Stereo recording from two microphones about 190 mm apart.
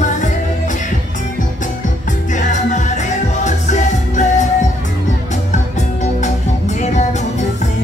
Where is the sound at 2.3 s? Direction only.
40° left (ahead or behind).